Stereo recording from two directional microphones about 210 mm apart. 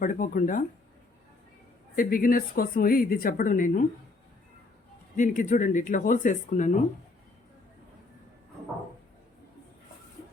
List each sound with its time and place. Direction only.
0.0 s speech: 40° left (ahead or behind)
2.0 s speech: 45° left (ahead or behind)
5.1 s speech: 40° left (ahead or behind)